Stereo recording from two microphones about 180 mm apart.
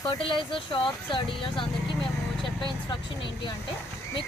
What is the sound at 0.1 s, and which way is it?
Speech, 30° left (ahead or behind).